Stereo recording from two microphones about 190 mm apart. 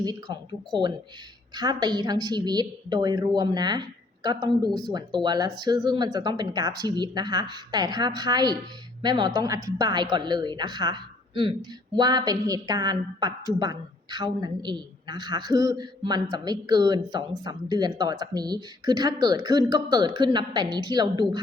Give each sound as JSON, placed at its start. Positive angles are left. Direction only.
{"t": 0.0, "sound": "a woman's voice", "side_deg": -20}